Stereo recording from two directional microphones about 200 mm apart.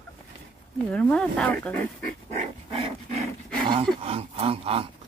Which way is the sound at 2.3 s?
30° right (ahead or behind).